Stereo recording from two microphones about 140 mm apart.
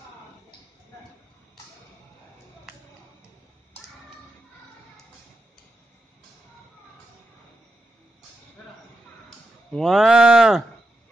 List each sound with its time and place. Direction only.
9.8 s speech: centre (ahead or behind)